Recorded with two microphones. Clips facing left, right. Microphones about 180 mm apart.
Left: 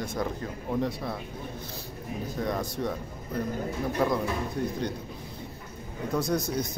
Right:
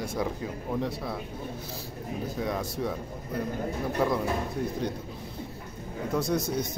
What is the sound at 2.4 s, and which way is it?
Speech, 5° right (ahead or behind).